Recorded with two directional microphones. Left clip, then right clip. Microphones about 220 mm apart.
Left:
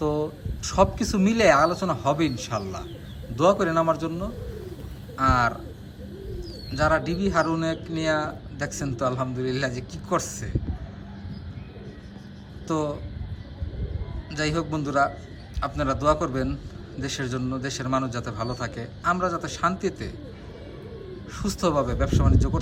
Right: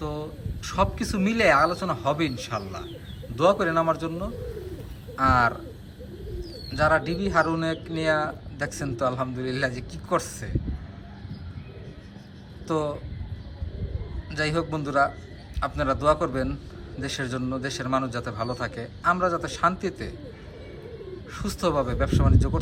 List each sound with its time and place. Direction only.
0.0 s a man's voice: 15° left (ahead or behind)
6.7 s a man's voice: 5° left (ahead or behind)
12.6 s a man's voice: 5° left (ahead or behind)
14.3 s a man's voice: 5° left (ahead or behind)
21.3 s speech: 10° left (ahead or behind)